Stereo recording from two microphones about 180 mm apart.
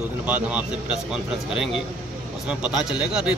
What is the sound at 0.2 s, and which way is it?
Speech, 5° right (ahead or behind).